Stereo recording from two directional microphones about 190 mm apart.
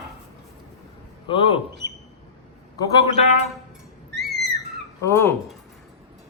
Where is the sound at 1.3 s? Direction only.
30° left (ahead or behind).